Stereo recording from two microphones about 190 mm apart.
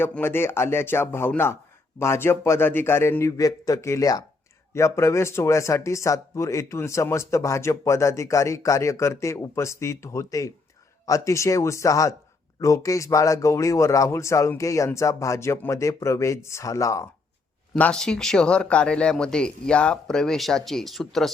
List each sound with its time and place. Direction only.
0.0 s speech: 10° left (ahead or behind)
17.7 s speech: 5° left (ahead or behind)